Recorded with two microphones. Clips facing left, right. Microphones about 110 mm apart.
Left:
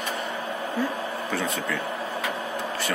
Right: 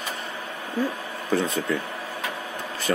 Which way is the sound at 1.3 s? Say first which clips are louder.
Right 6 dB; 40° right (ahead or behind).